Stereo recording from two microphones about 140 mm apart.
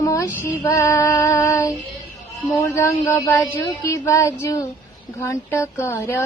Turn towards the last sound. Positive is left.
turn(degrees=20)  # may be behind; listen again after turning